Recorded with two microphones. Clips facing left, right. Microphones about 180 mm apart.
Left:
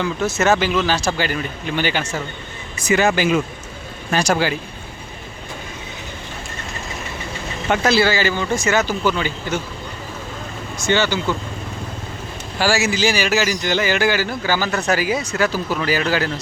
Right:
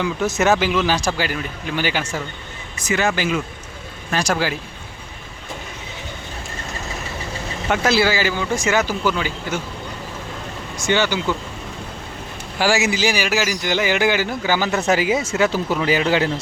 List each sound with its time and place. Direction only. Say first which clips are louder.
0.0 s speech: even; 15° right (ahead or behind)
2.7 s speech: left 4 dB; 10° left (ahead or behind)
4.1 s speech: left 2 dB; centre (ahead or behind)
7.7 s speech: left 1 dB; 10° right (ahead or behind)
10.8 s speech: left 1 dB; 15° right (ahead or behind)
12.5 s speech: even; 20° right (ahead or behind)